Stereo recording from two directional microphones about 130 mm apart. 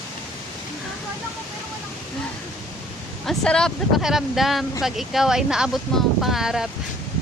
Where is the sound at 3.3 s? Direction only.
5° left (ahead or behind).